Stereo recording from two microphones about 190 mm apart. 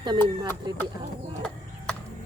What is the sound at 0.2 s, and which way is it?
Speech, 10° left (ahead or behind).